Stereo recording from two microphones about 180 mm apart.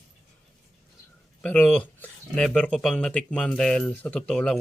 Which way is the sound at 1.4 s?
5° left (ahead or behind).